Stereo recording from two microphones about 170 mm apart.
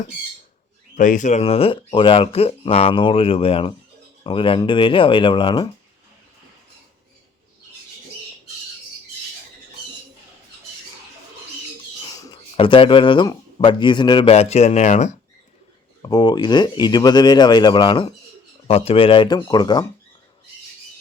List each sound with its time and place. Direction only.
0.9 s speech: 50° left (ahead or behind); by 5.6 s 30° left (ahead or behind)
12.0 s speech: 25° left (ahead or behind); by 15.1 s 40° left (ahead or behind)
16.0 s speech: 25° left (ahead or behind)